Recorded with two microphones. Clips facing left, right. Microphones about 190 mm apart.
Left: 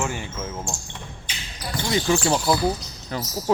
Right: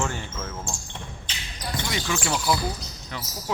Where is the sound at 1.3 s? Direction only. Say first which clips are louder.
Left 2 dB; 10° left (ahead or behind).